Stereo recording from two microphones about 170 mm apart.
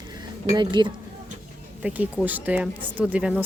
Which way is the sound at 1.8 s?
10° right (ahead or behind).